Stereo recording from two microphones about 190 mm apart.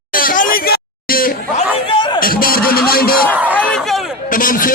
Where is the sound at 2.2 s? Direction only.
50° left (ahead or behind).